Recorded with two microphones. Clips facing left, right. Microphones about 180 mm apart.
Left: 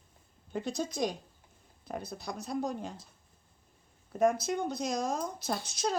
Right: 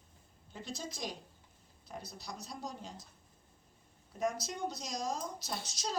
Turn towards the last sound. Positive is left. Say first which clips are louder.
# left 7 dB
turn(degrees=55)  # may be behind; listen again after turning